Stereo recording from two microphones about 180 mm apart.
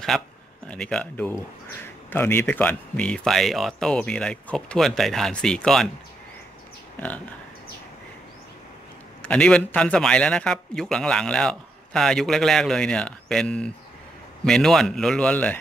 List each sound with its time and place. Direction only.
0.1 s a man's voice: centre (ahead or behind)
9.2 s a man's voice: 5° left (ahead or behind)